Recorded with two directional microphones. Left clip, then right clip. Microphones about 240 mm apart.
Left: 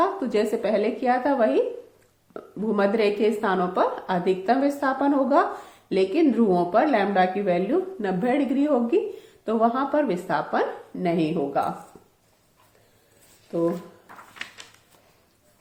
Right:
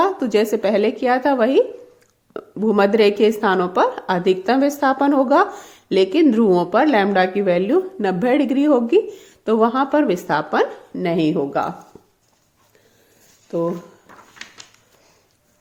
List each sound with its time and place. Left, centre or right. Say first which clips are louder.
0.0 s a woman's voice: right 5 dB; right
13.5 s speech: right 4 dB; right